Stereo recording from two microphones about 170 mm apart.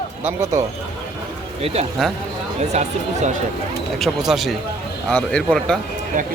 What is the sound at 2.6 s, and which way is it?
Speech, 40° right (ahead or behind).